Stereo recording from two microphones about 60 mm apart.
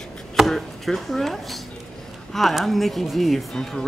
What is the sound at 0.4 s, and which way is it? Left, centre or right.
Chopping, centre.